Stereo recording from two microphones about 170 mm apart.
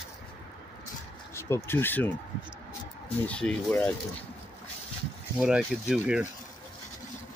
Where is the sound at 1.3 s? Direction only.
15° left (ahead or behind).